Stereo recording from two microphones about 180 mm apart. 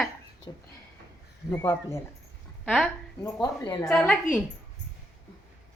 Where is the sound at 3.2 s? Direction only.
20° left (ahead or behind).